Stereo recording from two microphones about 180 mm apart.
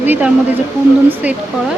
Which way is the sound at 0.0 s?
10° right (ahead or behind).